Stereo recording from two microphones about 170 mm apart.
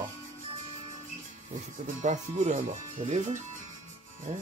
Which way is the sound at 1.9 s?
50° right (ahead or behind).